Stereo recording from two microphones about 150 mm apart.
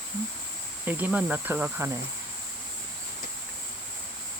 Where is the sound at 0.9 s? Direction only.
10° right (ahead or behind).